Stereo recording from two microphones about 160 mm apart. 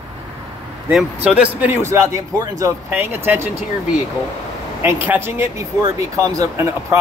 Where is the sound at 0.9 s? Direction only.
5° right (ahead or behind).